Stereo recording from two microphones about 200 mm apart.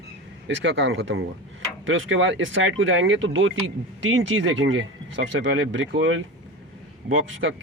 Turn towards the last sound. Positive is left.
turn(degrees=-65)  # may be behind; listen again after turning